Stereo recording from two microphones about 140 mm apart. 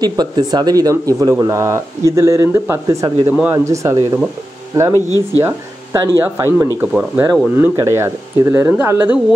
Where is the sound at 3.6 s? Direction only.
20° right (ahead or behind).